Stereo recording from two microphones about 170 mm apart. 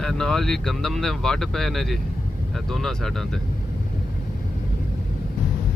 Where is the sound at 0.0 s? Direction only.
Centre (ahead or behind).